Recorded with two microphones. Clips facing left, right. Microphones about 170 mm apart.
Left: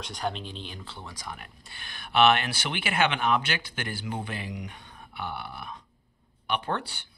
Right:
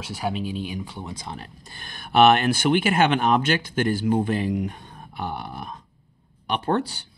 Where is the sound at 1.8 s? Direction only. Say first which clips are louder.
Right 5 dB; 45° right (ahead or behind).